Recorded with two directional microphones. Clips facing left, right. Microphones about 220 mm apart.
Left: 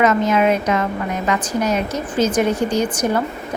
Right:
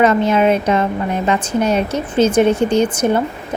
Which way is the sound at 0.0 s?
30° right (ahead or behind).